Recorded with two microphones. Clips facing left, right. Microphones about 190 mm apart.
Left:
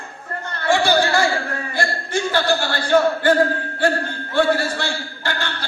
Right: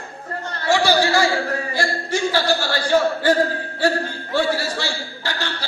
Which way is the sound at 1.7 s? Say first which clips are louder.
Left 3 dB; 55° left (ahead or behind).